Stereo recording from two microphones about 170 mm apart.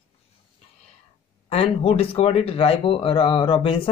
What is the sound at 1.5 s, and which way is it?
Speech, 35° left (ahead or behind).